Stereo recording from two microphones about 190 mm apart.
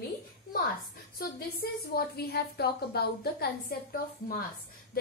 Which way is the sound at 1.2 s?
55° left (ahead or behind).